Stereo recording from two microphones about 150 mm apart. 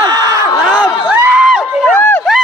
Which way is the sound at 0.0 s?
25° right (ahead or behind).